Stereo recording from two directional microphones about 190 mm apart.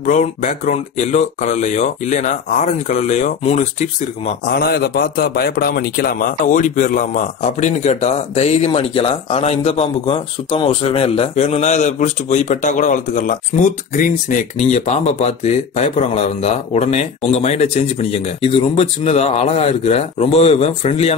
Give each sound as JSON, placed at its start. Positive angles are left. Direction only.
{"t": 0.0, "sound": "a man's voice", "side_deg": 40}
{"t": 4.5, "sound": "a man's voice", "side_deg": 55}